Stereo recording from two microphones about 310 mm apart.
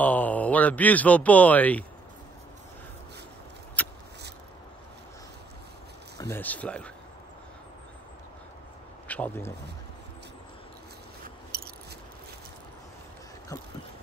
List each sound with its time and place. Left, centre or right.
0.0 s speech: centre
3.8 s vehicle: centre
6.3 s speech: centre
9.0 s speech: centre